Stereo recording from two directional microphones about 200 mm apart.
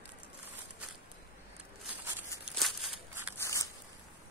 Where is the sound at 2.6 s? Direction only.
Centre (ahead or behind).